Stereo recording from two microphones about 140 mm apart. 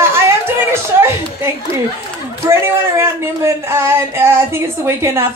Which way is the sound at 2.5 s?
20° right (ahead or behind).